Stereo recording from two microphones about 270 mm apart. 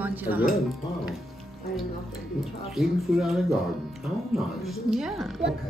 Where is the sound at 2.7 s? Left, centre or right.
Centre.